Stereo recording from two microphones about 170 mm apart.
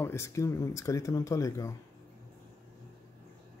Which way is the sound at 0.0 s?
15° left (ahead or behind).